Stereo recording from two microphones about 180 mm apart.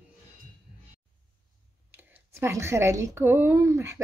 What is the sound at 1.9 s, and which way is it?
Speech, 15° right (ahead or behind).